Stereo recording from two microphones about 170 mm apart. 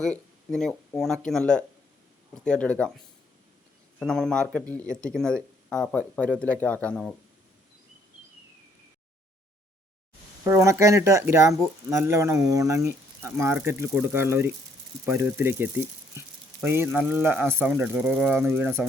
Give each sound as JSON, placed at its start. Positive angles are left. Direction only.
{"t": 0.0, "sound": "speech", "side_deg": 5}
{"t": 4.0, "sound": "speech", "side_deg": 5}
{"t": 10.4, "sound": "speech", "side_deg": -15}